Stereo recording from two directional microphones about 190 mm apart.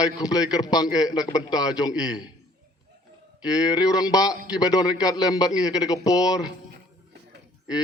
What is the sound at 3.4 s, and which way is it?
A man's voice, 20° left (ahead or behind).